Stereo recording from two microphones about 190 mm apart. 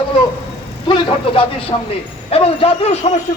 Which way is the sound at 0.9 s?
30° left (ahead or behind).